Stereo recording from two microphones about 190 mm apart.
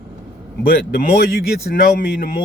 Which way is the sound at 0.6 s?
55° left (ahead or behind).